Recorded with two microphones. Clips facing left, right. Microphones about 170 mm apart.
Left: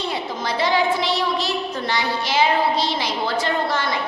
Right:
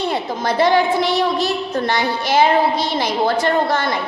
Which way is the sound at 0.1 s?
50° right (ahead or behind).